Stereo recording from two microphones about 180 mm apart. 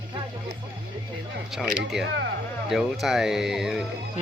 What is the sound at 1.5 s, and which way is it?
Speech, centre (ahead or behind).